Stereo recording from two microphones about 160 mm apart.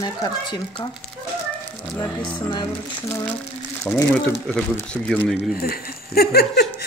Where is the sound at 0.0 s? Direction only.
25° left (ahead or behind).